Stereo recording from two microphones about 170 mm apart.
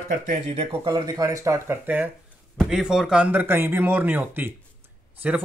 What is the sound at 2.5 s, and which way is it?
Speech, centre (ahead or behind).